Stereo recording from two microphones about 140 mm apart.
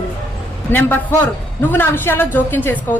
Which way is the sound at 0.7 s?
15° left (ahead or behind).